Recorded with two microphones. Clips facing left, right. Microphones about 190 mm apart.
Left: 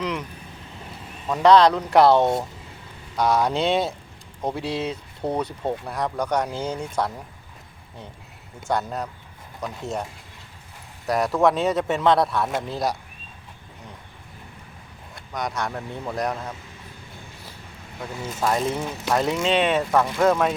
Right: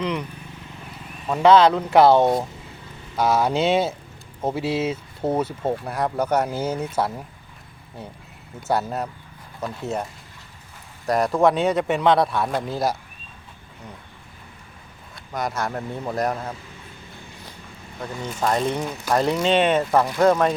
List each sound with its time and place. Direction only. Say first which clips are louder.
0.0 s speech: right 2 dB; centre (ahead or behind)
1.3 s speech: right 1 dB; 5° right (ahead or behind)
8.6 s speech: right 2 dB; 5° right (ahead or behind)
15.4 s speech: right 2 dB; centre (ahead or behind)
18.2 s speech: right 1 dB; 5° left (ahead or behind)
19.9 s speech: right 1 dB; 20° right (ahead or behind)
20.2 s speech: right 3 dB; centre (ahead or behind)